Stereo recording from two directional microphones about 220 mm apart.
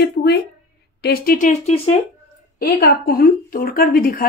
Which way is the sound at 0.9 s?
45° left (ahead or behind).